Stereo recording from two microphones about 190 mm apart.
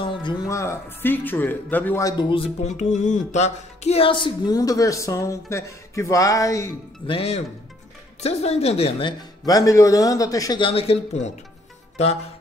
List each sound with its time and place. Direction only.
0.0 s speech: 25° left (ahead or behind)
2.8 s speech: 40° left (ahead or behind); by 6.7 s 15° left (ahead or behind)
7.1 s speech: 30° left (ahead or behind)